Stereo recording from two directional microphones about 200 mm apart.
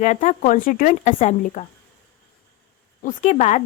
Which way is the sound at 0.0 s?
40° left (ahead or behind).